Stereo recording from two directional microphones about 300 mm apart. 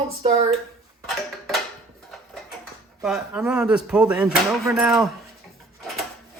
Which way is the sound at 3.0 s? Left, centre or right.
Centre.